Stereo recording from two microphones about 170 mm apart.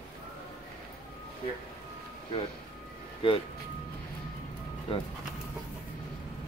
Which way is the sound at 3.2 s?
30° left (ahead or behind).